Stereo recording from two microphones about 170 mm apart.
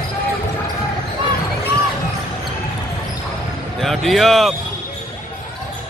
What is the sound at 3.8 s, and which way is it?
Speech, centre (ahead or behind).